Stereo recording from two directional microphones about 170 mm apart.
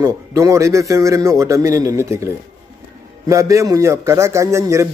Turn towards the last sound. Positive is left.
turn(degrees=-15)  # may be behind; listen again after turning